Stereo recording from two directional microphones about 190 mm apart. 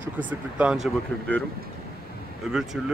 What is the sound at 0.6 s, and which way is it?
Speech, 5° right (ahead or behind).